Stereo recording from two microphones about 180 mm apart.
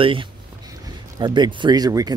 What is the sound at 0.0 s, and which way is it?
Speech, 30° right (ahead or behind).